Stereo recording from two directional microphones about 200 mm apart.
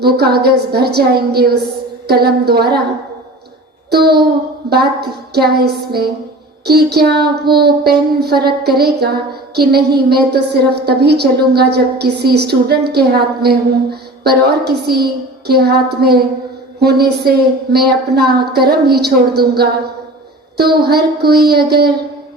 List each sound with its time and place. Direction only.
0.0 s a woman's voice: 50° right (ahead or behind)
3.8 s a sound: 50° right (ahead or behind)
4.7 s a woman's voice: 55° right (ahead or behind)